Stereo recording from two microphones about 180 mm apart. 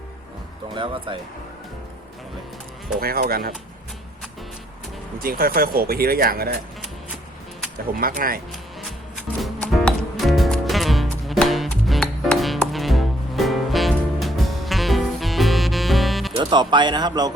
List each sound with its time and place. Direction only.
0.7 s speech: 30° right (ahead or behind)
3.0 s speech: 55° right (ahead or behind)
5.2 s speech: 55° right (ahead or behind)
7.9 s speech: 50° right (ahead or behind)
9.4 s music: 5° left (ahead or behind)
16.3 s speech: 25° right (ahead or behind)